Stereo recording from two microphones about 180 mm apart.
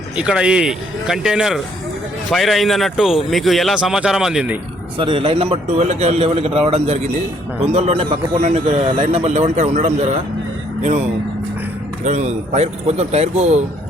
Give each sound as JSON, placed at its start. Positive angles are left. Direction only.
{"t": 0.2, "sound": "a man's voice", "side_deg": -5}
{"t": 4.9, "sound": "a man's voice", "side_deg": -30}
{"t": 12.0, "sound": "a man's voice", "side_deg": -40}